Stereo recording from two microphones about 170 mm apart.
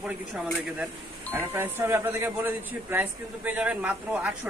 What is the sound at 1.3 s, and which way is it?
A man's voice, 10° right (ahead or behind).